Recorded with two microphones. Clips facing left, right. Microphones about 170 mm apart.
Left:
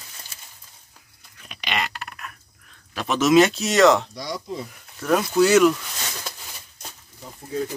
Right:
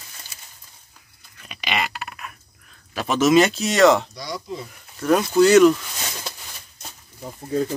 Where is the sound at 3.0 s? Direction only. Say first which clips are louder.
Even; centre (ahead or behind).